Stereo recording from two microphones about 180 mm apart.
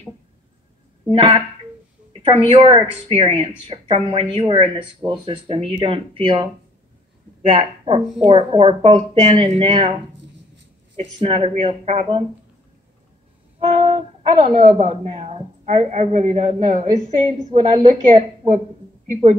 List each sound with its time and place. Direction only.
1.1 s a woman's voice: 30° right (ahead or behind)
7.5 s a woman's voice: 30° right (ahead or behind)
11.1 s a woman's voice: 30° right (ahead or behind)
13.6 s a sound: 35° right (ahead or behind)
14.4 s a woman's voice: 45° right (ahead or behind)